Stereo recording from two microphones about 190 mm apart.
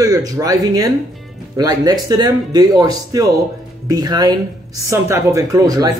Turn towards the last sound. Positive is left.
turn(degrees=-20)  # may be behind; listen again after turning